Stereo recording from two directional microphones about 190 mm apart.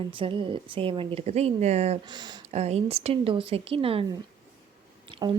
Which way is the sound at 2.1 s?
20° right (ahead or behind).